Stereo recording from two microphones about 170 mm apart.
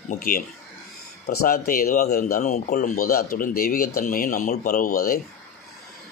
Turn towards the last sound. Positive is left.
turn(degrees=55)  # may be behind; listen again after turning